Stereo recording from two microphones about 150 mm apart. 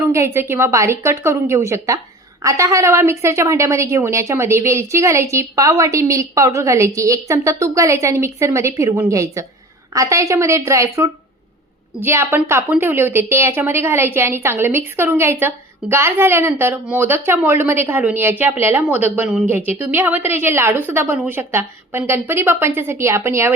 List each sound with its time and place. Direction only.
0.0 s a woman's voice: 20° right (ahead or behind)